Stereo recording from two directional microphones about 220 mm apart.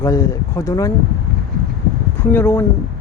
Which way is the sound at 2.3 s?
10° left (ahead or behind).